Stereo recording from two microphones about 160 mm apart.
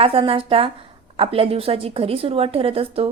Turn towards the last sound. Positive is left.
turn(degrees=-35)  # may be behind; listen again after turning